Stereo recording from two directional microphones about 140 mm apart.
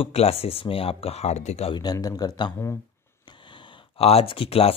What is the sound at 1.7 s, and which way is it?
Speech, 30° left (ahead or behind).